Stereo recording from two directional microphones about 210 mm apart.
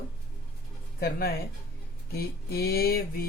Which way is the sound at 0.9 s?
50° left (ahead or behind).